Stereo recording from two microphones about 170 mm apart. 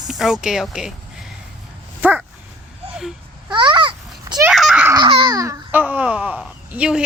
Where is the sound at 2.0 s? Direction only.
10° right (ahead or behind).